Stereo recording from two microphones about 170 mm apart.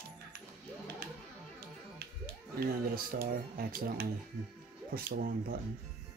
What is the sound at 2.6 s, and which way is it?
Speech, 60° right (ahead or behind).